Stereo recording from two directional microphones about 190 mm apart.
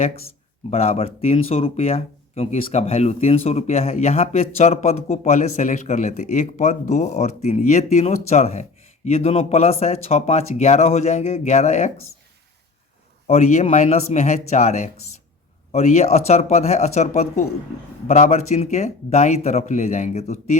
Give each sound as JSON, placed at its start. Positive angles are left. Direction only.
{"t": 0.7, "sound": "speech", "side_deg": 30}
{"t": 13.2, "sound": "speech", "side_deg": 35}